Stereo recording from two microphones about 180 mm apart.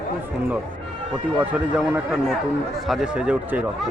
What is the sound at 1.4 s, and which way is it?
A man's voice, 10° right (ahead or behind).